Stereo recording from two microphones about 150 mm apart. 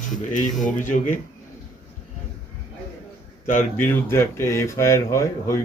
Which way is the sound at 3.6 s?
15° left (ahead or behind).